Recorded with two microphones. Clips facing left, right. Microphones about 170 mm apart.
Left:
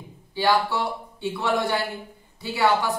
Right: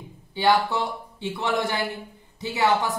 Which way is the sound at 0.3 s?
20° right (ahead or behind).